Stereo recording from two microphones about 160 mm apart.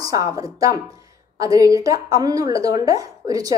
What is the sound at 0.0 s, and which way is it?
Speech, 20° right (ahead or behind).